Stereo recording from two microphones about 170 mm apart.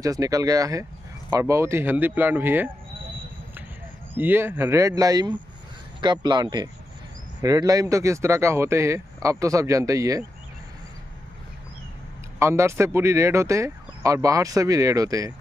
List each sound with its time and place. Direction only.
0.0 s speech: 20° right (ahead or behind)
4.2 s speech: 10° right (ahead or behind)
12.4 s speech: 15° right (ahead or behind)